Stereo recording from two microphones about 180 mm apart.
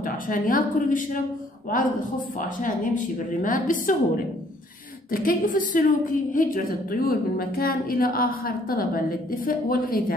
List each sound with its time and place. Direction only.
0.0 s a woman's voice: 50° left (ahead or behind)
5.1 s a woman's voice: 50° left (ahead or behind)